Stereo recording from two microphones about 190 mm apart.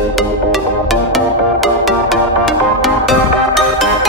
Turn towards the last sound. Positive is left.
turn(degrees=0)  # may be behind; listen again after turning